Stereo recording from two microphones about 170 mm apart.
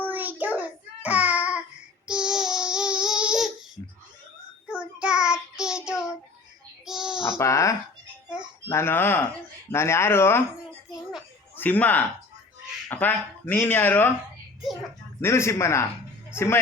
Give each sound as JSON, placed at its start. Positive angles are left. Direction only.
{"t": 0.1, "sound": "child singing", "side_deg": -10}
{"t": 4.7, "sound": "child singing", "side_deg": -5}
{"t": 6.8, "sound": "a sound", "side_deg": -5}
{"t": 7.3, "sound": "speech", "side_deg": 15}
{"t": 11.5, "sound": "speech", "side_deg": 10}
{"t": 15.2, "sound": "speech", "side_deg": 15}